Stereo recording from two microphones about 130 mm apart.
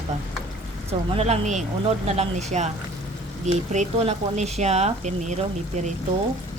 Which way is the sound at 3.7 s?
65° right (ahead or behind).